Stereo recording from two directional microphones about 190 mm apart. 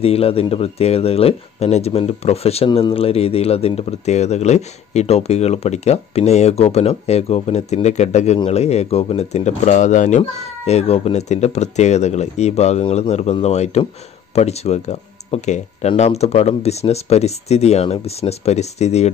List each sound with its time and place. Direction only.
0.0 s speech: 30° left (ahead or behind)